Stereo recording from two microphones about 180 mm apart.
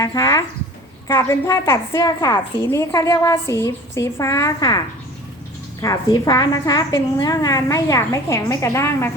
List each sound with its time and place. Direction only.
0.0 s a woman's voice: 15° left (ahead or behind)
5.8 s a woman's voice: 20° left (ahead or behind)